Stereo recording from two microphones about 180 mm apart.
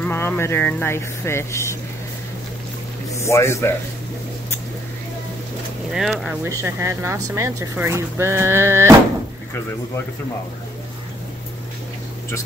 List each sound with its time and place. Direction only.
0.0 s speech: 10° left (ahead or behind)
3.2 s speech: 15° left (ahead or behind)
5.9 s speech: centre (ahead or behind)
6.4 s speech: 15° right (ahead or behind)